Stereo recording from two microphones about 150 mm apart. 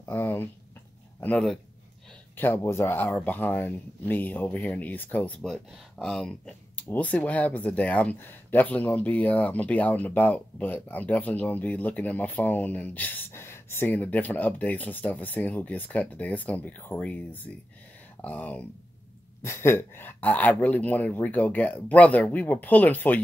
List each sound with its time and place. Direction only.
0.0 s speech: 15° left (ahead or behind)
1.2 s speech: 5° left (ahead or behind)
2.3 s speech: 15° left (ahead or behind)